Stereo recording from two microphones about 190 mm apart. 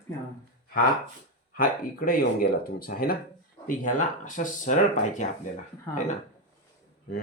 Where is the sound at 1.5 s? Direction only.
50° left (ahead or behind).